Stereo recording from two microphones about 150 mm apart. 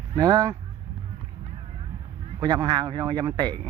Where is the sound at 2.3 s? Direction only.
25° right (ahead or behind).